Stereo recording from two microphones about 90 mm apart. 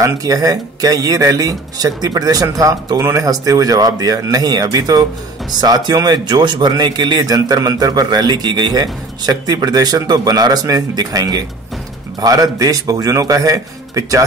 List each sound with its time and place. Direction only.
0.0 s a man's voice: 40° right (ahead or behind)
3.0 s speech: 30° right (ahead or behind)
3.3 s a man's voice: 40° right (ahead or behind)